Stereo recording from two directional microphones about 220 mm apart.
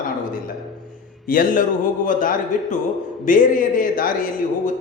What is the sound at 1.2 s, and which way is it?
A man's voice, 40° left (ahead or behind).